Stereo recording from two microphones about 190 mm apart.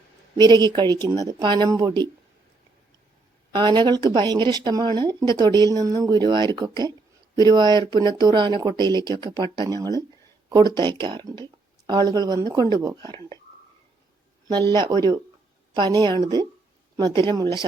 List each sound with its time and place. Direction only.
0.3 s speech: 20° right (ahead or behind)
3.5 s speech: 25° right (ahead or behind)
14.7 s speech: 20° right (ahead or behind)